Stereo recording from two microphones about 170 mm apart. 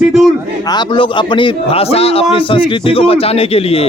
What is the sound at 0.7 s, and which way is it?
Speech, 30° left (ahead or behind).